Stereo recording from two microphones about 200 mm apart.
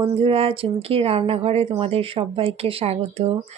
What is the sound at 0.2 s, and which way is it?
A woman's voice, 30° right (ahead or behind).